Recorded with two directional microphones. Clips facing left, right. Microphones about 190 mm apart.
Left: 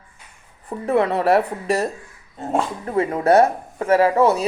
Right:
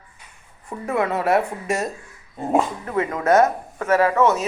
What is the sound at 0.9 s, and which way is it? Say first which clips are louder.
Speech: left 3 dB; 35° left (ahead or behind).